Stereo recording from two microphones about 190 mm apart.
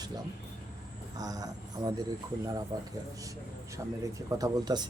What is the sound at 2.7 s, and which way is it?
Speech, 20° right (ahead or behind).